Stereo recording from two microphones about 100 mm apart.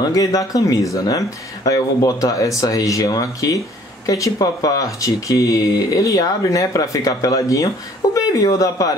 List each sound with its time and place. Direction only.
0.0 s speech: 35° left (ahead or behind)